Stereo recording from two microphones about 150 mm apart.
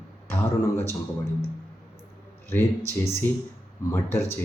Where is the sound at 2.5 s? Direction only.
15° left (ahead or behind).